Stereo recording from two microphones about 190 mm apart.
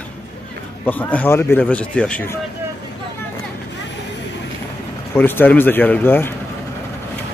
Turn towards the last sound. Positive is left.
turn(degrees=10)  # may be behind; listen again after turning